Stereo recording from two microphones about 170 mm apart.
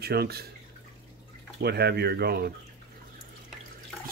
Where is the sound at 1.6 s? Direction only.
70° right (ahead or behind).